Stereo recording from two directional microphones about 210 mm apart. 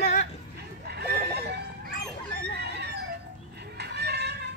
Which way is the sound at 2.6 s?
50° right (ahead or behind).